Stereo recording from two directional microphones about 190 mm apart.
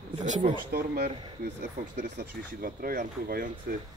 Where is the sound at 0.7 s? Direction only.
50° right (ahead or behind).